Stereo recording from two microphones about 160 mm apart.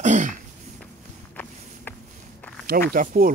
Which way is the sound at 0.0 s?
50° right (ahead or behind).